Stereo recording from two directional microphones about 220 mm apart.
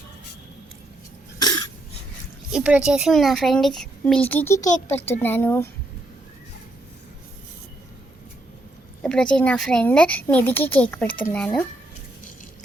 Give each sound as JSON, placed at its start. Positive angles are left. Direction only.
{"t": 1.4, "sound": "cough", "side_deg": 15}
{"t": 2.5, "sound": "a woman's voice", "side_deg": -5}
{"t": 9.0, "sound": "a woman's voice", "side_deg": 5}